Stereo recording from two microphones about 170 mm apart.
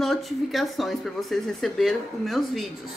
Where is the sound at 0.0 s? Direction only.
Centre (ahead or behind).